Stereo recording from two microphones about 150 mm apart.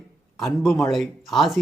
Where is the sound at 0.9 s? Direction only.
Centre (ahead or behind).